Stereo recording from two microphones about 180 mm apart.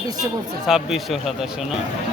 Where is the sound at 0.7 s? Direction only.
Centre (ahead or behind).